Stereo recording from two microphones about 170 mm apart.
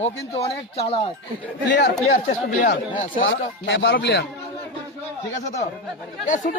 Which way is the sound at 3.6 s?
90° left.